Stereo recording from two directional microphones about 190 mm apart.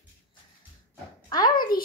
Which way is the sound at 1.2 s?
20° left (ahead or behind).